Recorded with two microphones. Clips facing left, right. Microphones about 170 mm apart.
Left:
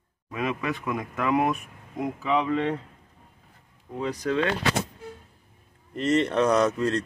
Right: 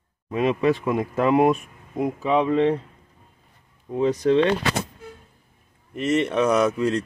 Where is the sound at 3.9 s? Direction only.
25° right (ahead or behind).